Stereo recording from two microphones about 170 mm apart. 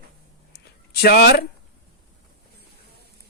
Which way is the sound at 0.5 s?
70° left (ahead or behind).